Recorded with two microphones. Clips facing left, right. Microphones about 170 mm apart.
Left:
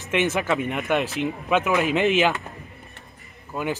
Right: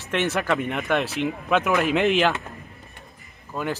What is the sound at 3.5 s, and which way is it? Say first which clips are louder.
Speech: left 1 dB; 5° left (ahead or behind).